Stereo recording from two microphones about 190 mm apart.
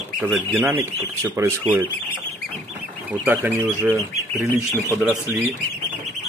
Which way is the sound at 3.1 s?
10° right (ahead or behind).